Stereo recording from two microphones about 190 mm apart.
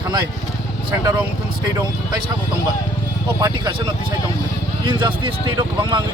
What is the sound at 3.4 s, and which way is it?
A man's voice, 20° right (ahead or behind).